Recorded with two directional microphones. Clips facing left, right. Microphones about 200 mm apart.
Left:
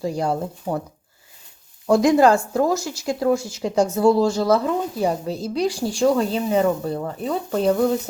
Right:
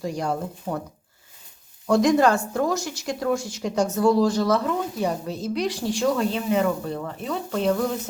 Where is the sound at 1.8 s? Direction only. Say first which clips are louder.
Left 3 dB; 25° left (ahead or behind).